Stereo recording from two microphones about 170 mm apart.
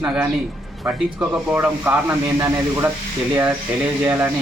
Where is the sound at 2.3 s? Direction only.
15° right (ahead or behind).